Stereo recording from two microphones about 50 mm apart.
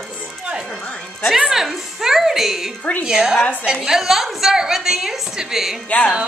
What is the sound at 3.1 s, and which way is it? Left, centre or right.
A woman's voice, centre.